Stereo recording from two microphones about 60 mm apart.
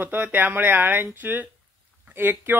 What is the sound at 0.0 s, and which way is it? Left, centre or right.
Speech, right.